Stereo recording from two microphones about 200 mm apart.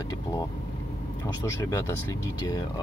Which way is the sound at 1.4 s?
15° left (ahead or behind).